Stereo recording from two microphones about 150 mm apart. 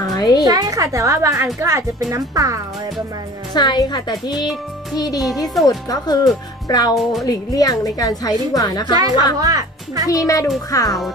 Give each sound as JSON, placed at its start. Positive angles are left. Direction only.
{"t": 0.0, "sound": "music", "side_deg": 25}
{"t": 0.4, "sound": "a woman's voice", "side_deg": -25}
{"t": 3.5, "sound": "a woman's voice", "side_deg": 30}
{"t": 7.0, "sound": "a woman's voice", "side_deg": 0}
{"t": 7.2, "sound": "a woman's voice", "side_deg": 25}
{"t": 8.9, "sound": "a woman's voice", "side_deg": -25}
{"t": 10.0, "sound": "a woman's voice", "side_deg": 20}